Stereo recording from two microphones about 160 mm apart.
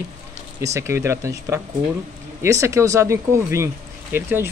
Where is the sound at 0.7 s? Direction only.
15° right (ahead or behind).